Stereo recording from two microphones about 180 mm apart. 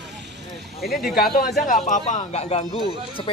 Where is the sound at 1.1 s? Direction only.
55° left (ahead or behind); by 3.3 s 35° left (ahead or behind).